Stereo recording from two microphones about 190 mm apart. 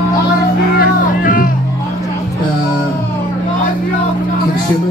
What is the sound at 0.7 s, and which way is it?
Music, 45° left (ahead or behind).